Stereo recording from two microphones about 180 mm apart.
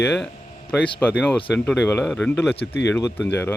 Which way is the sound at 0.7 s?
10° left (ahead or behind).